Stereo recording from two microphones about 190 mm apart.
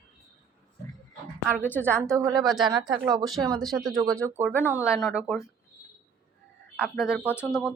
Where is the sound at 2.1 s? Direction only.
20° right (ahead or behind).